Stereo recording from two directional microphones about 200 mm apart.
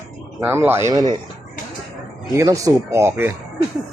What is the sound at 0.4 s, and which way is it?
Speech, 10° right (ahead or behind).